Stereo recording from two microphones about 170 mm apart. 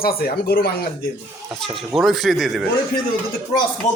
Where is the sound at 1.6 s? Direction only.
Centre (ahead or behind).